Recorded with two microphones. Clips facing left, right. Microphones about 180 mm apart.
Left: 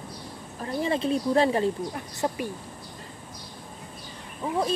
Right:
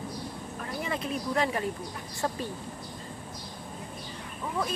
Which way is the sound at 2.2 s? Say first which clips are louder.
Left 3 dB; 20° left (ahead or behind).